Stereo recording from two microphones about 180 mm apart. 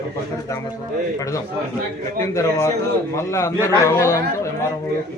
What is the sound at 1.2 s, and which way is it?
A man's voice, 20° left (ahead or behind).